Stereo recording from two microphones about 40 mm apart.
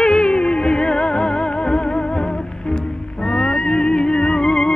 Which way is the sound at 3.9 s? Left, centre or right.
Centre.